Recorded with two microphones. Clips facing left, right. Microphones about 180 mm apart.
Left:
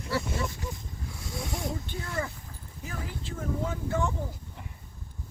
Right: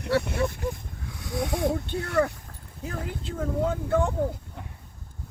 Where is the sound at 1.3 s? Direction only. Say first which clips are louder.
Right 9 dB; 70° right (ahead or behind).